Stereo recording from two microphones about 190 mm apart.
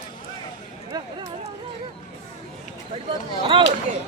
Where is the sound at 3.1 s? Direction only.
25° right (ahead or behind).